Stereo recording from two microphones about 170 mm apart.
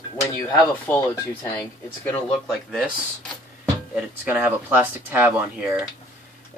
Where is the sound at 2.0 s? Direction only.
5° left (ahead or behind).